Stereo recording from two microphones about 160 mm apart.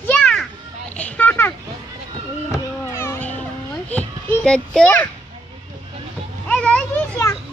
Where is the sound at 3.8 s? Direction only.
10° left (ahead or behind).